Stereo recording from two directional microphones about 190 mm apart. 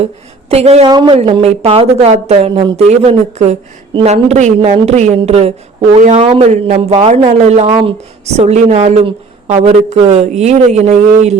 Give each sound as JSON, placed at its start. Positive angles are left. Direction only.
{"t": 0.0, "sound": "a woman's voice", "side_deg": -35}